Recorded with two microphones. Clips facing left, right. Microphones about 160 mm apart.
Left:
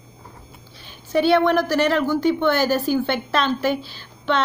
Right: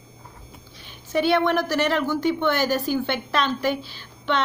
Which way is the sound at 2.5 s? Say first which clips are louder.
Left 3 dB; 40° left (ahead or behind).